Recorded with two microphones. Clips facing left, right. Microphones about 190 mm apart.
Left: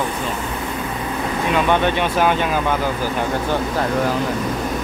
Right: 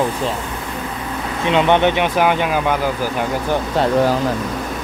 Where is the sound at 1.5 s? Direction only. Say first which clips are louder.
Right 4 dB; 20° right (ahead or behind).